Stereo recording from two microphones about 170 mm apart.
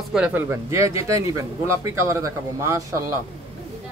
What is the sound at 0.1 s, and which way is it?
Speech, 10° right (ahead or behind).